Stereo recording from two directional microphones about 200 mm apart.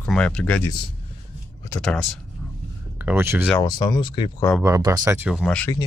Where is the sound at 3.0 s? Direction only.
10° right (ahead or behind).